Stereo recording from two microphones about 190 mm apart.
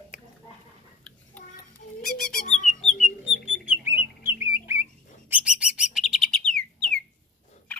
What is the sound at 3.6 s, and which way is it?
Bird, 15° right (ahead or behind).